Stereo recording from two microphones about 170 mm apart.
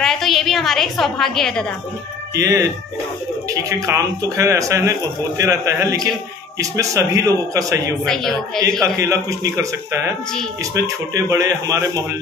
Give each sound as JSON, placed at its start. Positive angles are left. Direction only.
{"t": 0.0, "sound": "a woman's voice", "side_deg": 0}
{"t": 2.3, "sound": "a man's voice", "side_deg": -20}
{"t": 8.0, "sound": "a woman's voice", "side_deg": 0}
{"t": 8.8, "sound": "a man's voice", "side_deg": -20}